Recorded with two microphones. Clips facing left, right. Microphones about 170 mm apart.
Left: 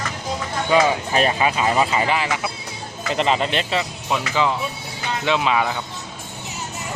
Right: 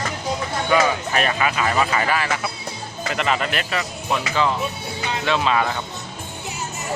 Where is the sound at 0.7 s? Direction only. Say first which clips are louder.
Left 2 dB; 25° left (ahead or behind).